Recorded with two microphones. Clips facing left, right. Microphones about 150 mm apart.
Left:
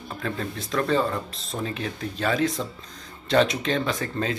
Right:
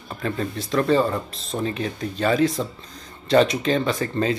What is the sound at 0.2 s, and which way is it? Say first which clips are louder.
Speech: right 4 dB; centre (ahead or behind).